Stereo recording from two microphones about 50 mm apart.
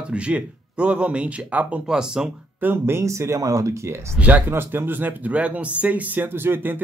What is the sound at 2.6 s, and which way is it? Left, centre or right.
Speech, right.